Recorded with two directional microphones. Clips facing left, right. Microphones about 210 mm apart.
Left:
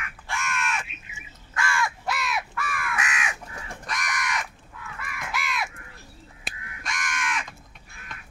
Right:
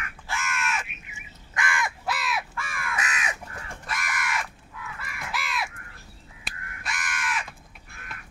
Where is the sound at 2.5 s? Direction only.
30° right (ahead or behind).